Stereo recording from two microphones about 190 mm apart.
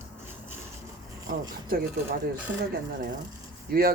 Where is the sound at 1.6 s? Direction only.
50° right (ahead or behind).